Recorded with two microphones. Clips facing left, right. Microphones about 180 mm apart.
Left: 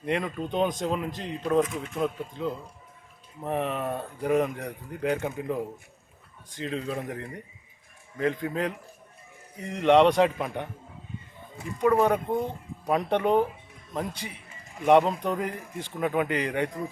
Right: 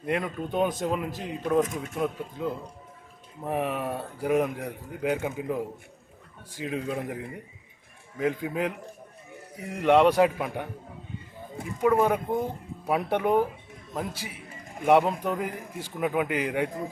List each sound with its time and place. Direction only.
0.0 s a man's voice: 5° right (ahead or behind)
1.6 s speech: 45° right (ahead or behind)
2.0 s a man's voice: 5° right (ahead or behind)